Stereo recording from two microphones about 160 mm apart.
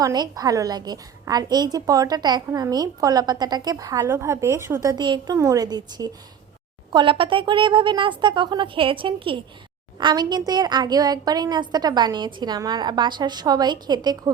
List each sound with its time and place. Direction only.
0.0 s a woman's voice: 25° right (ahead or behind)